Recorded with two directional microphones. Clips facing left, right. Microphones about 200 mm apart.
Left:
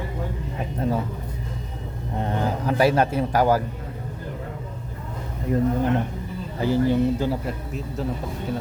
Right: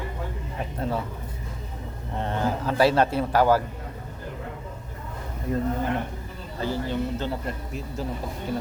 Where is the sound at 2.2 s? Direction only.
15° left (ahead or behind).